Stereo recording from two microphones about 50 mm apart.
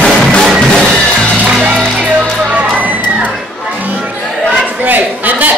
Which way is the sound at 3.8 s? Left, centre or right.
Right.